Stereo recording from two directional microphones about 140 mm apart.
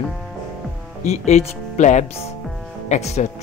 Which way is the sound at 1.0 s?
55° left (ahead or behind).